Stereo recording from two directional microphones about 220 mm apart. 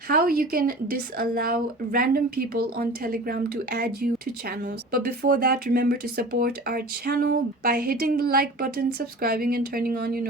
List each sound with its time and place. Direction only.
0.1 s a woman's voice: 40° right (ahead or behind)